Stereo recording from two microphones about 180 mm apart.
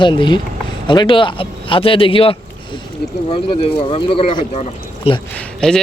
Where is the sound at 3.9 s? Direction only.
30° left (ahead or behind).